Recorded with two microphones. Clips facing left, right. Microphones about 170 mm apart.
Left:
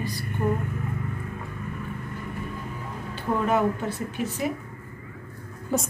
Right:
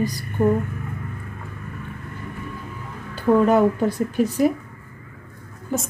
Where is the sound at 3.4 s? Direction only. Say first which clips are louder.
Right 7 dB; 40° right (ahead or behind).